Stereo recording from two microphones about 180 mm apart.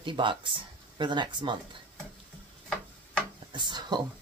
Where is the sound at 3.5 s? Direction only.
25° right (ahead or behind).